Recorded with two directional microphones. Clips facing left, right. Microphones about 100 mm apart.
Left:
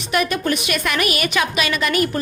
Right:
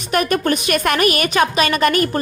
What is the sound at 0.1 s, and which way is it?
A woman's voice, 50° right (ahead or behind).